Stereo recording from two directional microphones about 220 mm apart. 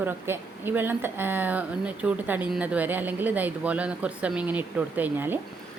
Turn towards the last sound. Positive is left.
turn(degrees=-10)  # may be behind; listen again after turning